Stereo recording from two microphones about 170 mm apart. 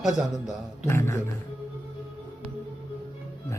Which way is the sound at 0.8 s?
15° left (ahead or behind).